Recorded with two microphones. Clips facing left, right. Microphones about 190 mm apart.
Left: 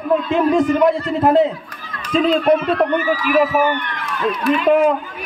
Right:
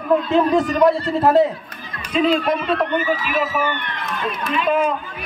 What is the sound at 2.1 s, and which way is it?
Speech, 40° left (ahead or behind).